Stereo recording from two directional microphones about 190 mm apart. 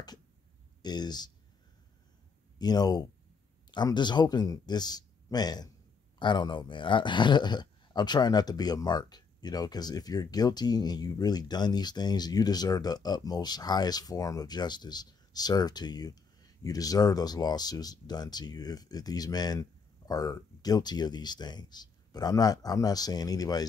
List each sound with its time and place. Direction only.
0.8 s speech: 20° left (ahead or behind)
2.6 s speech: 20° left (ahead or behind)